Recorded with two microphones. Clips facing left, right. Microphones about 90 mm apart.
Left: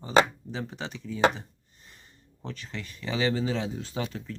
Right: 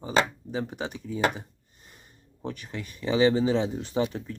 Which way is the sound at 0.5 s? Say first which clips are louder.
Right 7 dB; 10° right (ahead or behind).